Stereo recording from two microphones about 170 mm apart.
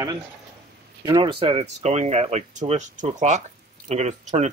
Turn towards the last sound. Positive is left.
turn(degrees=-40)  # may be behind; listen again after turning